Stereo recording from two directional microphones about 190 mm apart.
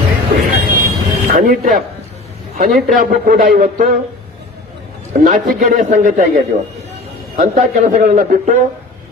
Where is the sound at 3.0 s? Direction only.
50° right (ahead or behind).